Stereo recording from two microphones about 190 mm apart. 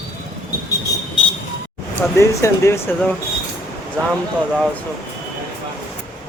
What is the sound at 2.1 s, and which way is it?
Speech, 15° left (ahead or behind).